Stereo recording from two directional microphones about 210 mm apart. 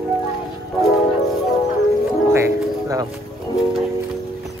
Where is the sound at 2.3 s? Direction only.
15° right (ahead or behind).